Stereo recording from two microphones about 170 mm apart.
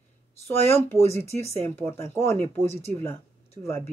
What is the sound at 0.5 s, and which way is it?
Speech, 15° left (ahead or behind).